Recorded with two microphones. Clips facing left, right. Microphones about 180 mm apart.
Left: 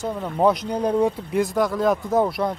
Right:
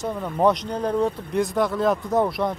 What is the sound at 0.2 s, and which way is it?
Speech, 5° left (ahead or behind).